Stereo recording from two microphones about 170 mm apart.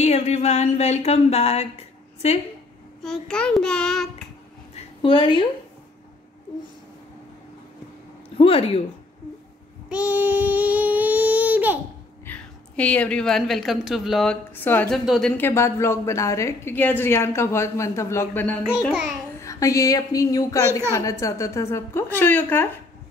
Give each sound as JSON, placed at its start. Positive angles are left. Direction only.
{"t": 0.0, "sound": "a sound", "side_deg": 40}
{"t": 3.0, "sound": "a woman's voice", "side_deg": 5}
{"t": 4.7, "sound": "a sound", "side_deg": 30}
{"t": 8.4, "sound": "a sound", "side_deg": 35}
{"t": 9.8, "sound": "child singing", "side_deg": -10}
{"t": 12.3, "sound": "a woman's voice", "side_deg": 10}
{"t": 15.3, "sound": "a woman's voice", "side_deg": 15}
{"t": 18.7, "sound": "a woman's voice", "side_deg": 0}
{"t": 19.4, "sound": "a woman's voice", "side_deg": 20}